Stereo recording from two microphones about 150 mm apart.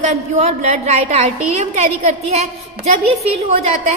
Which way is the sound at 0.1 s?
45° right (ahead or behind).